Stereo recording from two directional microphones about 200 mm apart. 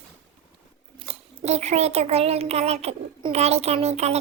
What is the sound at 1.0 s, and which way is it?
A child's voice, 30° right (ahead or behind).